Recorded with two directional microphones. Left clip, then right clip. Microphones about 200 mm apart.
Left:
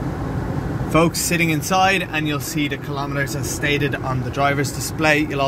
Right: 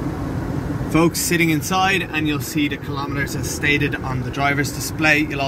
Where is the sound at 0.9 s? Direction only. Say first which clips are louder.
Even; 5° left (ahead or behind).